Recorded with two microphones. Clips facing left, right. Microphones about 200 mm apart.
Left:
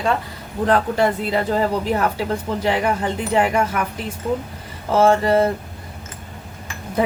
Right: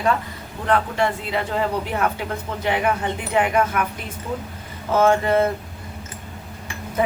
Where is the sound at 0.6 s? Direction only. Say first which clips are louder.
Left 3 dB; 40° left (ahead or behind).